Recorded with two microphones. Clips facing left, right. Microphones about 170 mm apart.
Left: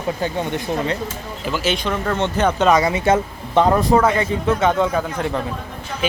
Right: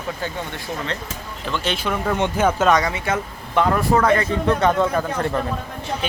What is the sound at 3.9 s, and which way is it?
Speech, 10° left (ahead or behind).